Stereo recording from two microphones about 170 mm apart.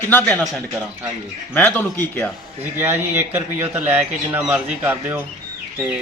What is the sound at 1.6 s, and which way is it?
Speech, 10° left (ahead or behind).